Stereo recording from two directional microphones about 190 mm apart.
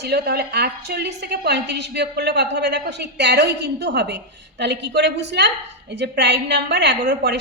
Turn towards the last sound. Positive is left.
turn(degrees=-60)  # may be behind; listen again after turning